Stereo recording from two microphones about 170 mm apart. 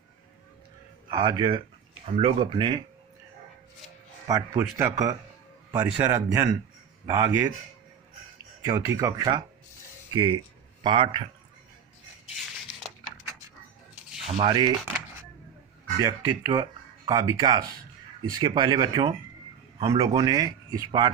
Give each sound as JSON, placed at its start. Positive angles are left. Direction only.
{"t": 1.1, "sound": "speech", "side_deg": -25}
{"t": 4.3, "sound": "a man's voice", "side_deg": -20}
{"t": 8.6, "sound": "speech", "side_deg": -20}
{"t": 14.3, "sound": "speech", "side_deg": -35}
{"t": 16.0, "sound": "speech", "side_deg": -20}